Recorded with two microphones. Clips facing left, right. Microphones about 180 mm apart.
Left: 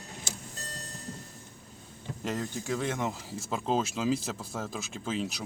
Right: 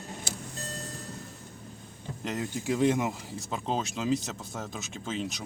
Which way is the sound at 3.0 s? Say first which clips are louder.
Right 2 dB; centre (ahead or behind).